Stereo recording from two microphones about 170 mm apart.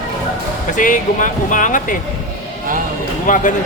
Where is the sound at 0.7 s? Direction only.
50° left (ahead or behind).